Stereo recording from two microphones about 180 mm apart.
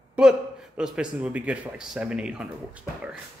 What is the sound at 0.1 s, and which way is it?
Speech, 5° right (ahead or behind).